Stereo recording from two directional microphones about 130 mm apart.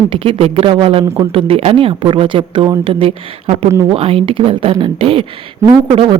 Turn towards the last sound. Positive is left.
turn(degrees=-35)  # may be behind; listen again after turning